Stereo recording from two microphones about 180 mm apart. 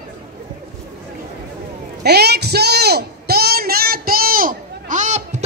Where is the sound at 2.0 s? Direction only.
65° right (ahead or behind).